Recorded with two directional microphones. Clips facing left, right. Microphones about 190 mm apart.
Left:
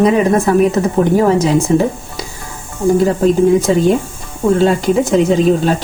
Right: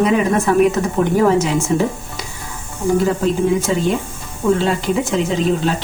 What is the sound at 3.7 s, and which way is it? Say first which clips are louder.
A woman's voice: left 6 dB; 35° left (ahead or behind).